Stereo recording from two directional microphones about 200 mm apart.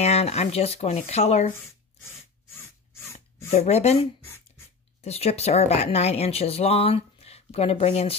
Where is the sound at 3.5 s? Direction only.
30° left (ahead or behind).